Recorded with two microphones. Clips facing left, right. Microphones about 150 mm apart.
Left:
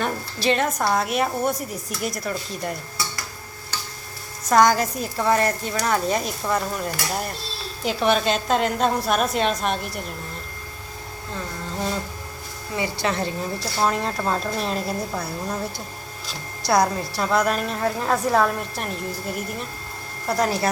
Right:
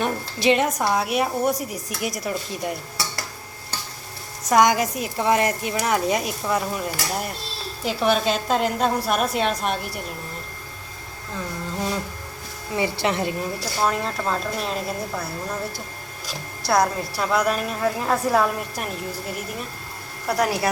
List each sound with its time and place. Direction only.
0.0 s a woman's voice: 15° right (ahead or behind)
4.4 s a woman's voice: 15° right (ahead or behind)
12.7 s speech: 20° right (ahead or behind)
13.8 s a woman's voice: centre (ahead or behind)
16.6 s a woman's voice: centre (ahead or behind)